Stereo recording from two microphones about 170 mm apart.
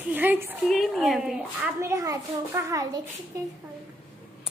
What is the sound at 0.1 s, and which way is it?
Speech, 10° right (ahead or behind).